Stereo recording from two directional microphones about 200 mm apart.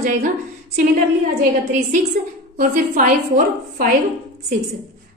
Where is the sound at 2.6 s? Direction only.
40° right (ahead or behind).